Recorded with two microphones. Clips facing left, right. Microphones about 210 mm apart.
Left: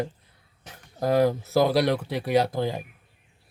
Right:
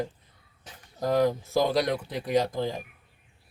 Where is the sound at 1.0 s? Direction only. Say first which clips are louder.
Left 3 dB; 60° left (ahead or behind).